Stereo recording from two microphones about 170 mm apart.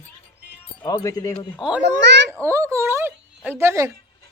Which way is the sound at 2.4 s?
15° right (ahead or behind).